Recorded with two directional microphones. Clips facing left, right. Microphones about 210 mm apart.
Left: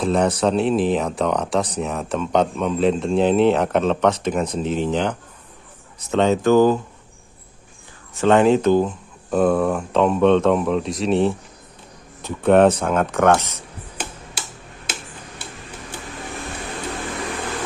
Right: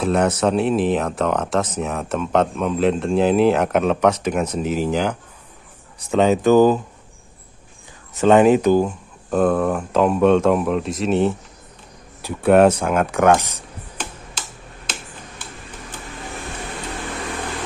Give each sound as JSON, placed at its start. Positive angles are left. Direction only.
{"t": 0.0, "sound": "speech", "side_deg": -5}
{"t": 6.1, "sound": "speech", "side_deg": -15}
{"t": 8.2, "sound": "speech", "side_deg": -15}
{"t": 9.3, "sound": "speech", "side_deg": 0}